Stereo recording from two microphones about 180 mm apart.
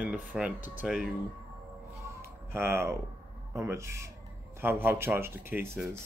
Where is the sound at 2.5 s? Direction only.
15° right (ahead or behind).